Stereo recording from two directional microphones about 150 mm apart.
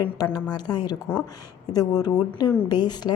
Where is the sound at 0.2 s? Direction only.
25° left (ahead or behind).